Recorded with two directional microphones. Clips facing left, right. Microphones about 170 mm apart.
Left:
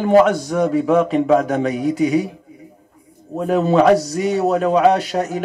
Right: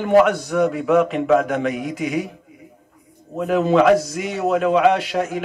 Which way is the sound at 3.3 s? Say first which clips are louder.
Left 1 dB; 35° left (ahead or behind).